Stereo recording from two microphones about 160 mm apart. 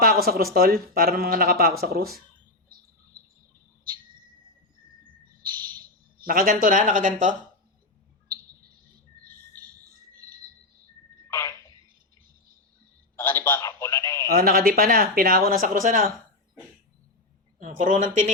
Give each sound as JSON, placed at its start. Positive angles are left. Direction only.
{"t": 0.0, "sound": "speech", "side_deg": -70}
{"t": 6.2, "sound": "speech", "side_deg": -60}
{"t": 11.3, "sound": "a sound", "side_deg": 15}
{"t": 13.1, "sound": "telephone", "side_deg": 15}
{"t": 14.3, "sound": "speech", "side_deg": -65}
{"t": 17.6, "sound": "speech", "side_deg": -55}